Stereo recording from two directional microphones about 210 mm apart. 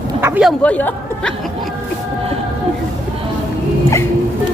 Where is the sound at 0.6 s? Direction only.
5° left (ahead or behind).